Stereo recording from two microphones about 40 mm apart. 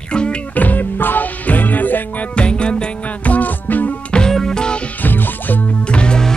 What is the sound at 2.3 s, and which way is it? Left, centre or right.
Music, left.